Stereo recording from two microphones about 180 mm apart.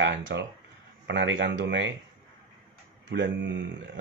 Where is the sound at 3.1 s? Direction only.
80° right.